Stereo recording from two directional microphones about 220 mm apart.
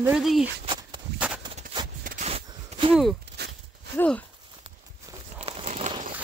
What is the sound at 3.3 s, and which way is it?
Walk, 50° right (ahead or behind).